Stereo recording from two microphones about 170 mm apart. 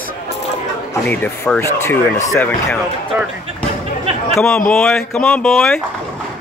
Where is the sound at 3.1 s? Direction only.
10° right (ahead or behind).